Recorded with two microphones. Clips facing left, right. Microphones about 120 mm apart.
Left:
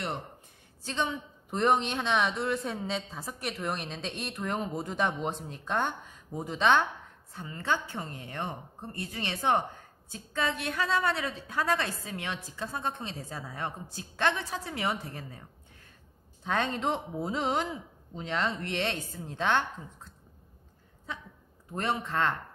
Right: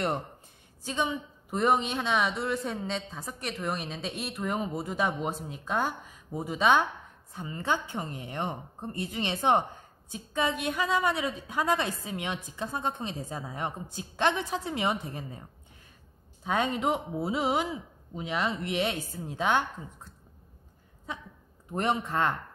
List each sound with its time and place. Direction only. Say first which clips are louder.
0.8 s a woman's voice: right 2 dB; 10° right (ahead or behind)
16.4 s a woman's voice: right 2 dB; 10° right (ahead or behind)
21.7 s a woman's voice: right 2 dB; 15° right (ahead or behind)